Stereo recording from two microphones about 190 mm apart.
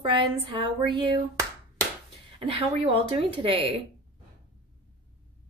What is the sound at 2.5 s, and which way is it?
Child singing, 30° right (ahead or behind).